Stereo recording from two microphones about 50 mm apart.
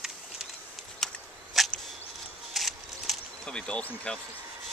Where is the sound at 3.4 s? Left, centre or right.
Centre.